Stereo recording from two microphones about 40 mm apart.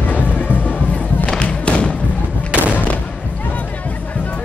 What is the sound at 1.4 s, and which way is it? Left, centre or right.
Thump, left.